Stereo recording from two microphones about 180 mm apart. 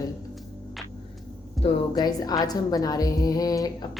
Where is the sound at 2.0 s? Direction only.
20° left (ahead or behind).